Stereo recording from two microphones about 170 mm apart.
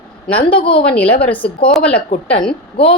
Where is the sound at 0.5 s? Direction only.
30° left (ahead or behind).